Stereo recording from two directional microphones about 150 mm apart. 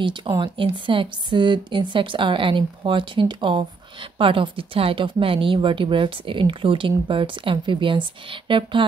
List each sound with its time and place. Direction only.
0.0 s speech: 30° right (ahead or behind)